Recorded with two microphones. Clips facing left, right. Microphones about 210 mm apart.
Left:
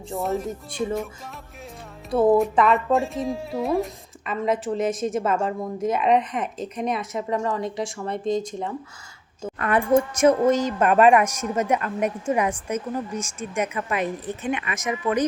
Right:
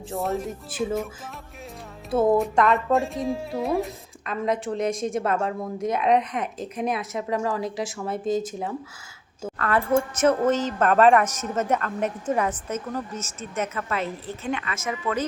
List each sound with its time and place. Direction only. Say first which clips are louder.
0.1 s speech: left 1 dB; centre (ahead or behind)
2.0 s speech: left 2 dB; centre (ahead or behind)
9.6 s a woman's voice: left 3 dB; 20° left (ahead or behind)